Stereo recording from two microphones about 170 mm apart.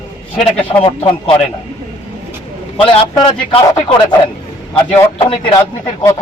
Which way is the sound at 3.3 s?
30° left (ahead or behind).